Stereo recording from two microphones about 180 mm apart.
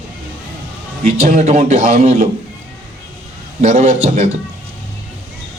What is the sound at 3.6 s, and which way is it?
Speech, 40° right (ahead or behind).